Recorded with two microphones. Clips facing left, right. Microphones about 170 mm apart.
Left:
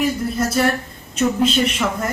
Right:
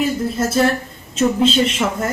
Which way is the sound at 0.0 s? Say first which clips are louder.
Right 1 dB; 25° right (ahead or behind).